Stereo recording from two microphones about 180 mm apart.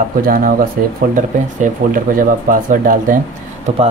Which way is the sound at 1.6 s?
45° right (ahead or behind).